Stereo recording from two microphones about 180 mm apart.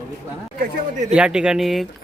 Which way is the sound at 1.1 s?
5° right (ahead or behind).